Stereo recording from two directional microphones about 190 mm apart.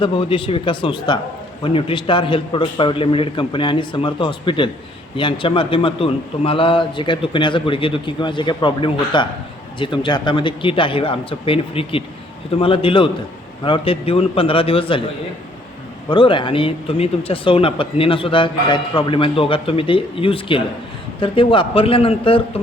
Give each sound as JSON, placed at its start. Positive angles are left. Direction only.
{"t": 0.0, "sound": "speech", "side_deg": 25}
{"t": 16.0, "sound": "speech", "side_deg": 25}